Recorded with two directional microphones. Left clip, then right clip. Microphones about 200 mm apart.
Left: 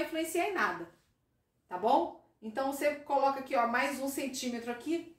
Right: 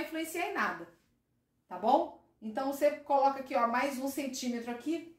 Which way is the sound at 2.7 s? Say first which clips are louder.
Right 4 dB; 30° right (ahead or behind).